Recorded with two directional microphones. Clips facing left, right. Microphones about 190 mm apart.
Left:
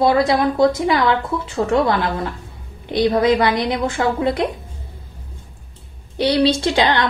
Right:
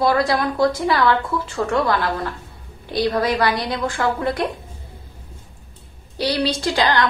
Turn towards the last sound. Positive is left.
turn(degrees=25)  # may be behind; listen again after turning